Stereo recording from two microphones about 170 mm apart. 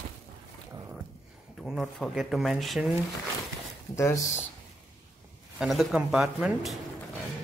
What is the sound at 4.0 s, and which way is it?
Speech, 20° left (ahead or behind).